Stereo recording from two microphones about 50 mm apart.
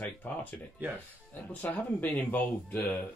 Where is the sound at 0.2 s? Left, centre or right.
Left.